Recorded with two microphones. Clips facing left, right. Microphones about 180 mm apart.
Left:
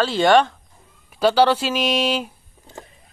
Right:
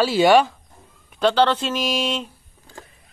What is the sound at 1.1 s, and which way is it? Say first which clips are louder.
Speech: left 2 dB; 10° left (ahead or behind).